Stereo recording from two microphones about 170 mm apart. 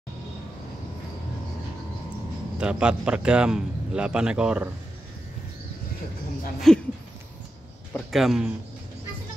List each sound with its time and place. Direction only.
2.6 s a man's voice: 5° right (ahead or behind)
6.7 s a man's voice: centre (ahead or behind)
7.9 s a man's voice: centre (ahead or behind)